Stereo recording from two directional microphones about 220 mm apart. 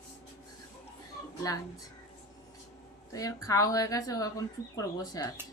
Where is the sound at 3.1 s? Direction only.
15° left (ahead or behind).